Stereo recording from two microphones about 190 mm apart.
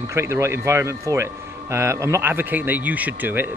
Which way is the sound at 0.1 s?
15° right (ahead or behind).